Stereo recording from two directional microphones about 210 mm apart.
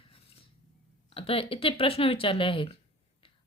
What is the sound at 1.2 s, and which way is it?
Speech, 25° left (ahead or behind).